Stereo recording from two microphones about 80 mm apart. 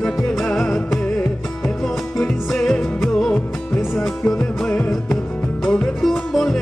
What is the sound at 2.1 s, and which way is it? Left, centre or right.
Music, centre.